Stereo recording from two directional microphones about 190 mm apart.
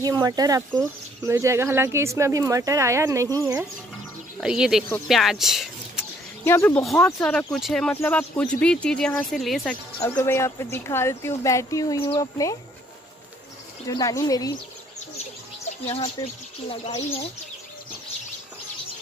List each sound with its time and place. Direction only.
0.0 s speech: 20° right (ahead or behind); by 5.7 s centre (ahead or behind)
6.4 s speech: 10° left (ahead or behind)
9.9 s speech: 15° left (ahead or behind)
13.8 s a woman's voice: 20° left (ahead or behind)
16.2 s a woman's voice: 20° left (ahead or behind)
16.8 s speech: 35° left (ahead or behind)